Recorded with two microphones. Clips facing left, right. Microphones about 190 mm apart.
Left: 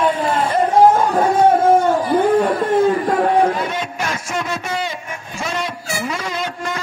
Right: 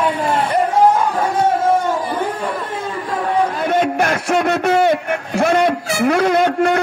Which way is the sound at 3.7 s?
55° right (ahead or behind).